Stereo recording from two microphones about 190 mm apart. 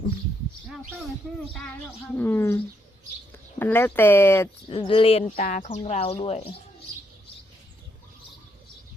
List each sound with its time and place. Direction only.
2.1 s speech: 10° left (ahead or behind)
3.6 s speech: 10° left (ahead or behind)
4.7 s speech: 25° left (ahead or behind); by 5.8 s 45° left (ahead or behind)
5.8 s speech: 30° left (ahead or behind)